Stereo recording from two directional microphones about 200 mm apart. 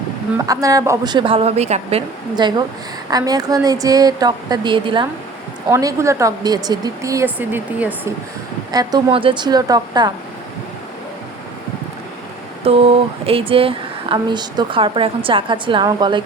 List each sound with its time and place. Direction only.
0.3 s speech: 15° right (ahead or behind)
8.7 s speech: 20° right (ahead or behind)
12.6 s speech: 30° right (ahead or behind)